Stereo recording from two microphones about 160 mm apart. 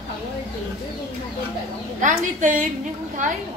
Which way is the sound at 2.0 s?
55° right (ahead or behind).